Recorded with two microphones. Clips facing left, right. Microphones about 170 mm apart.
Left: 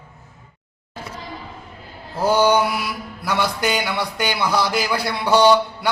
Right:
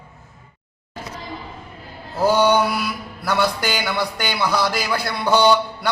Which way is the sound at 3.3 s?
Centre (ahead or behind).